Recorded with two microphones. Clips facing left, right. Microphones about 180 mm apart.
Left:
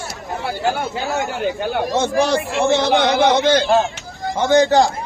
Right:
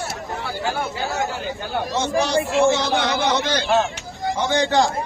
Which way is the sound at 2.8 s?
65° left (ahead or behind).